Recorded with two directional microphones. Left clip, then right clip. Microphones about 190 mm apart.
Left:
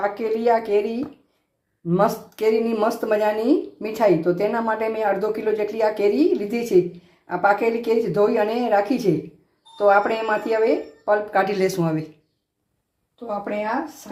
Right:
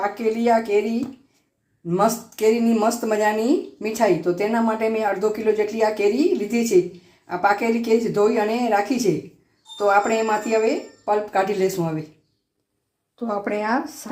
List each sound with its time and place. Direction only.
0.0 s speech: centre (ahead or behind)
13.1 s speech: 50° right (ahead or behind)